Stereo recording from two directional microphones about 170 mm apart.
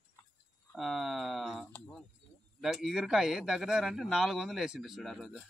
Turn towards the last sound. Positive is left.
turn(degrees=0)  # may be behind; listen again after turning